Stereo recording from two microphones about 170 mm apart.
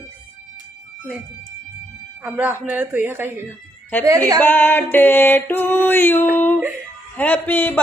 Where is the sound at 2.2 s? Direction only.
10° right (ahead or behind).